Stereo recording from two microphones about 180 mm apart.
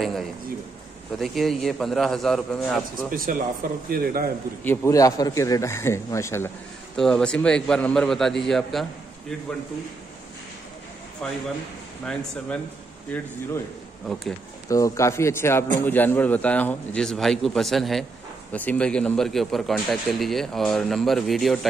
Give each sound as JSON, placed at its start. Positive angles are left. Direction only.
{"t": 0.0, "sound": "bird", "side_deg": 0}
{"t": 1.1, "sound": "a man's voice", "side_deg": 0}
{"t": 3.1, "sound": "speech", "side_deg": -50}
{"t": 4.6, "sound": "speech", "side_deg": 15}
{"t": 7.0, "sound": "a man's voice", "side_deg": 5}
{"t": 11.2, "sound": "a man's voice", "side_deg": 5}
{"t": 14.7, "sound": "a man's voice", "side_deg": 15}